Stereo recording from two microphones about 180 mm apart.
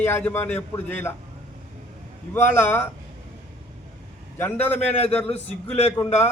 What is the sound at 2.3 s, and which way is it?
Speech, 10° left (ahead or behind).